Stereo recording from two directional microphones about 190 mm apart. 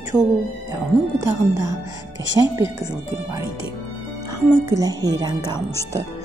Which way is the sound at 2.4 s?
15° right (ahead or behind).